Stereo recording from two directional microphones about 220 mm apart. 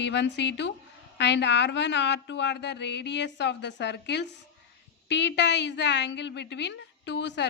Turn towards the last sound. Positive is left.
turn(degrees=50)  # may be behind; listen again after turning